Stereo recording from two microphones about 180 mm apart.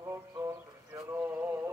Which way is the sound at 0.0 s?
15° right (ahead or behind).